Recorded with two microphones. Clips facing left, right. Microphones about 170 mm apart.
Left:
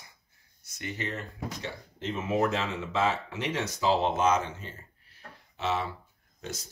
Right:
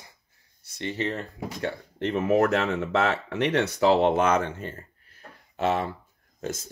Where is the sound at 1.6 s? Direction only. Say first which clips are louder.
Right 8 dB; 65° right (ahead or behind).